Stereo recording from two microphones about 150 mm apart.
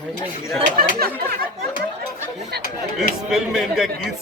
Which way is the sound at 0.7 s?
90° right.